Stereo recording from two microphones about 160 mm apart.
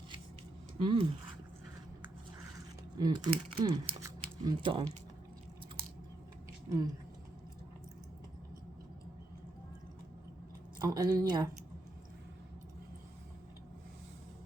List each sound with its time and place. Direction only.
0.8 s speech: 30° right (ahead or behind)
3.0 s speech: 30° right (ahead or behind)
6.7 s speech: 20° right (ahead or behind)
10.8 s speech: 25° right (ahead or behind)